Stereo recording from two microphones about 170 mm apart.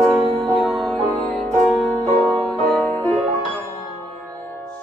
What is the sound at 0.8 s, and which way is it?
Music, 5° left (ahead or behind).